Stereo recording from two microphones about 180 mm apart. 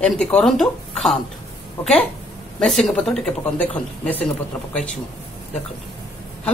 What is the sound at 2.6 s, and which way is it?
Speech, centre (ahead or behind).